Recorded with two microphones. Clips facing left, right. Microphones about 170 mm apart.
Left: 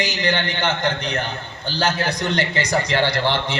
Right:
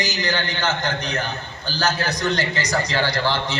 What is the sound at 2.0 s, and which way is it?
Speech, 25° left (ahead or behind).